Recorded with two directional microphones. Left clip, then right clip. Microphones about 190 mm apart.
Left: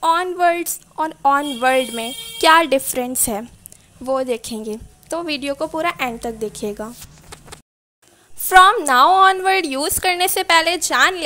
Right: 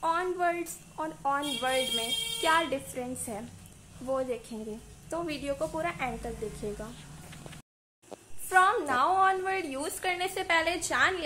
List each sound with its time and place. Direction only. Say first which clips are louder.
0.0 s a woman's voice: left 12 dB; 45° left (ahead or behind)
8.5 s a woman's voice: left 13 dB; 50° left (ahead or behind)